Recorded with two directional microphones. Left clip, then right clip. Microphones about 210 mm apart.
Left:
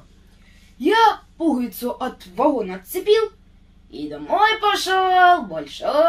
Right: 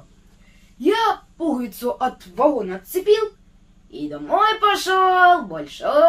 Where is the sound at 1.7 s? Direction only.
20° right (ahead or behind).